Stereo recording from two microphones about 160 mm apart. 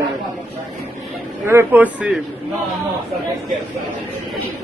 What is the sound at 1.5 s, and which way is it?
Speech, 15° right (ahead or behind).